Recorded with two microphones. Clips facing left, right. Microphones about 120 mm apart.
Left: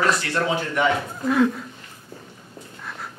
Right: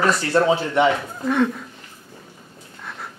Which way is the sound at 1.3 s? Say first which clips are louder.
Left 1 dB; centre (ahead or behind).